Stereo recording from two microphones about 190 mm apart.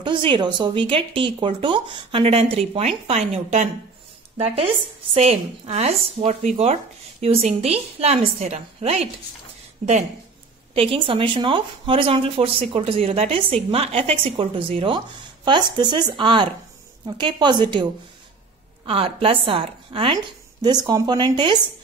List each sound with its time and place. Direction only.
0.0 s speech: 25° right (ahead or behind)
5.1 s speech: 35° right (ahead or behind)
10.7 s speech: 30° right (ahead or behind)
18.9 s speech: 30° right (ahead or behind)